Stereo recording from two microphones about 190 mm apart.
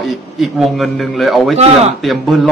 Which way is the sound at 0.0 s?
Centre (ahead or behind).